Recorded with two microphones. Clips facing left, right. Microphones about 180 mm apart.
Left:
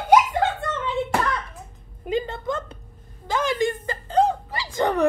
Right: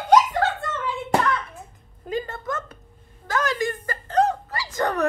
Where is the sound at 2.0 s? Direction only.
20° left (ahead or behind).